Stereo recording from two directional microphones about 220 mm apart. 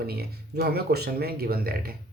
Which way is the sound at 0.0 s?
45° right (ahead or behind).